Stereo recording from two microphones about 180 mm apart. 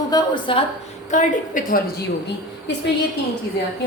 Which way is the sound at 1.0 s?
45° left (ahead or behind).